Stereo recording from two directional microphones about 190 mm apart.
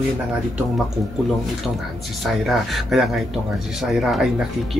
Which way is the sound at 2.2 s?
Centre (ahead or behind).